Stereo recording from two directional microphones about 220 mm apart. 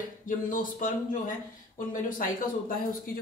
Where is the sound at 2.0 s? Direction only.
40° left (ahead or behind).